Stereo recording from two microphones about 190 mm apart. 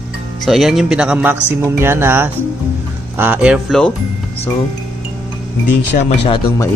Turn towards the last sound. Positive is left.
turn(degrees=25)  # may be behind; listen again after turning